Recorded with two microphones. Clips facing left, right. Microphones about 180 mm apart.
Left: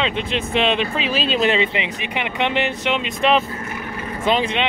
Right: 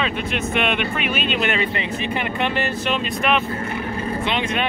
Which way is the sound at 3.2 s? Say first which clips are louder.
Left 4 dB; 30° left (ahead or behind).